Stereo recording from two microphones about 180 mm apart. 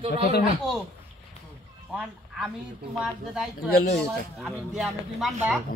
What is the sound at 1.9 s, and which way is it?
Speech, 5° right (ahead or behind).